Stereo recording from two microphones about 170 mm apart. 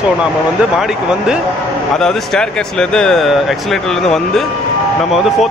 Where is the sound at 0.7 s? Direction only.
5° right (ahead or behind).